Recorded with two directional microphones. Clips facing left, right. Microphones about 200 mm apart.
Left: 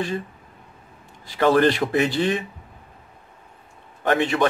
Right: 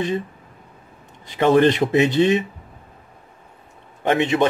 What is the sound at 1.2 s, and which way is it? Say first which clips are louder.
Speech: right 2 dB; 20° right (ahead or behind).